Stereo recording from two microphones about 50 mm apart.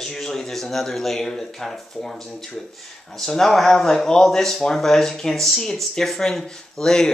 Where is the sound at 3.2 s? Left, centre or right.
Centre.